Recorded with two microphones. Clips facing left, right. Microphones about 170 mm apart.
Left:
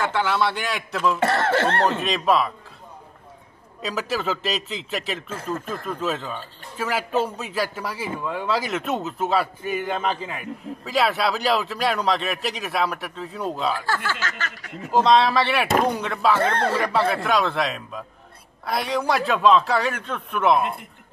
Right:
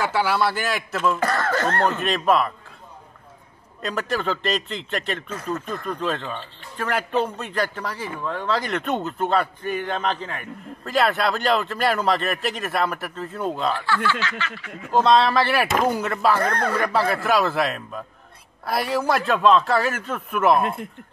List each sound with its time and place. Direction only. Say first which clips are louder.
0.0 s a man's voice: right 1 dB; 5° right (ahead or behind)
1.2 s speech: left 2 dB; 25° left (ahead or behind)
1.9 s a man's voice: right 1 dB; centre (ahead or behind)
3.8 s a man's voice: right 1 dB; centre (ahead or behind)
13.8 s snicker: right 3 dB; 45° left (ahead or behind)
14.9 s a man's voice: even; centre (ahead or behind)
16.3 s speech: left 1 dB; 25° left (ahead or behind)
16.7 s a man's voice: even; centre (ahead or behind)